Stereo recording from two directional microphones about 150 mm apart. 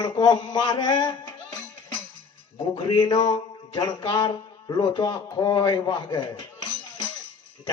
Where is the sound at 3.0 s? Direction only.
25° left (ahead or behind).